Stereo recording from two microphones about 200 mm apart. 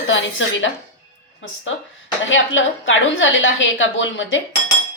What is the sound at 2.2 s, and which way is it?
A woman's voice, 70° left (ahead or behind).